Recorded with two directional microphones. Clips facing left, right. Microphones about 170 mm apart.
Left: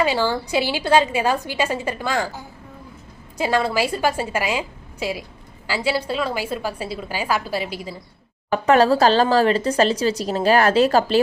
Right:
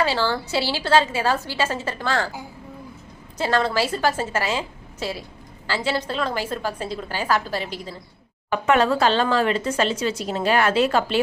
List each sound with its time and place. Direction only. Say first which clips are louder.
0.0 s a woman's voice: left 2 dB; 15° left (ahead or behind)
3.3 s a woman's voice: left 1 dB; 10° left (ahead or behind)
8.4 s speech: left 4 dB; 35° left (ahead or behind)